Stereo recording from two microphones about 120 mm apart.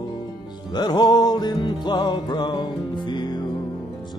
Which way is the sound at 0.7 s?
35° left (ahead or behind).